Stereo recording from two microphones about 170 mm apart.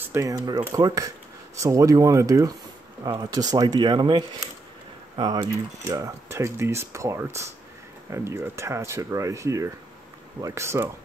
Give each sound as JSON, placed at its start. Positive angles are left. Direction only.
{"t": 0.1, "sound": "speech", "side_deg": -20}